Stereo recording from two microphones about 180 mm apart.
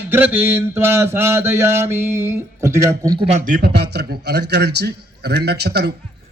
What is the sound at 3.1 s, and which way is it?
A man's voice, 35° right (ahead or behind).